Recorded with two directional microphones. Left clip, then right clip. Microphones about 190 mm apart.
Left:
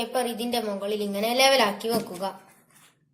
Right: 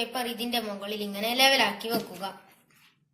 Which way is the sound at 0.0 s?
55° left (ahead or behind).